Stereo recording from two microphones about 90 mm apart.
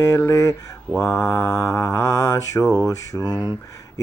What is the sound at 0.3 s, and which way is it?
Speech, 35° left (ahead or behind).